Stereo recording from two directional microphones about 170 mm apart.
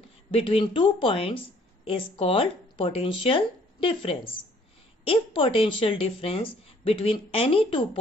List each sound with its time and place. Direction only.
0.3 s speech: 30° left (ahead or behind)